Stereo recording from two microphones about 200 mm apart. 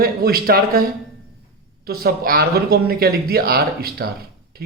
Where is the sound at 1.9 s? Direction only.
50° right (ahead or behind).